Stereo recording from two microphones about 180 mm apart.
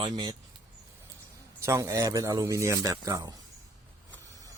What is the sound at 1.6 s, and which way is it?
Speech, 15° right (ahead or behind).